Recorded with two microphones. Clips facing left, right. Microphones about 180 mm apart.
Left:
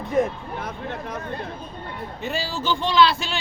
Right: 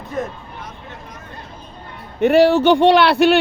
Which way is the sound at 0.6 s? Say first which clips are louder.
Left 7 dB; 60° left (ahead or behind).